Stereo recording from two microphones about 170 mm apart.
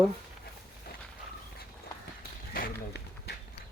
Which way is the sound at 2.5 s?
70° left (ahead or behind).